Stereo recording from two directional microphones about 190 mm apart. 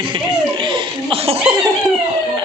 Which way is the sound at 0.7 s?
25° right (ahead or behind).